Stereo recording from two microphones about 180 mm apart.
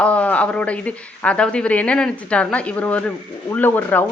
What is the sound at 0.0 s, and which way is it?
Speech, 5° left (ahead or behind).